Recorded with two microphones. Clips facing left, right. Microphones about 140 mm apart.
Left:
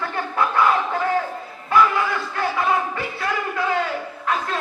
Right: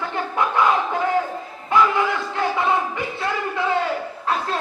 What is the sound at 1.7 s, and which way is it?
Music, 20° right (ahead or behind).